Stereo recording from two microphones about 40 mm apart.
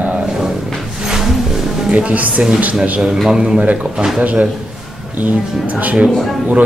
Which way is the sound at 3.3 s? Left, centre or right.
Right.